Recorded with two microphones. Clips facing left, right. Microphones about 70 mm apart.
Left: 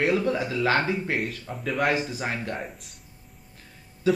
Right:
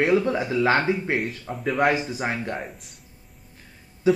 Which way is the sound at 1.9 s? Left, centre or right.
Right.